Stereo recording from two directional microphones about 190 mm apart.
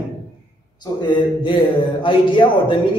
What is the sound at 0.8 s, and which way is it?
A man's voice, 25° left (ahead or behind).